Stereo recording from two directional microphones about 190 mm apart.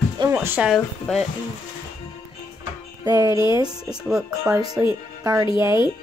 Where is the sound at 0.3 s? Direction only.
10° right (ahead or behind).